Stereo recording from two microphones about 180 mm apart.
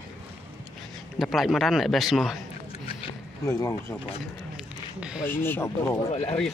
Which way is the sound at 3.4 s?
20° left (ahead or behind).